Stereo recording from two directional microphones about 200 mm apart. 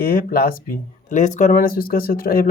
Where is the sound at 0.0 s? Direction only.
45° left (ahead or behind).